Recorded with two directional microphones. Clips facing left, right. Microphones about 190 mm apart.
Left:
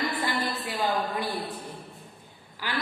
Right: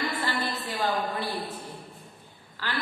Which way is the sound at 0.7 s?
10° left (ahead or behind).